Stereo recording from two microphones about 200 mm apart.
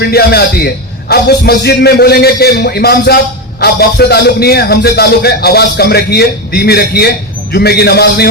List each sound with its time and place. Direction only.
0.0 s a man's voice: 55° left (ahead or behind)